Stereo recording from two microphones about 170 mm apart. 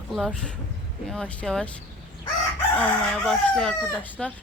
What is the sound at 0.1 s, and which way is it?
Speech, centre (ahead or behind).